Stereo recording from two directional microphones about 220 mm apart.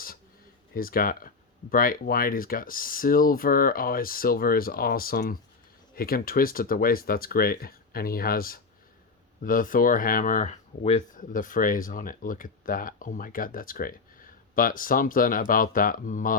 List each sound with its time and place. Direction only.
0.7 s speech: 40° left (ahead or behind)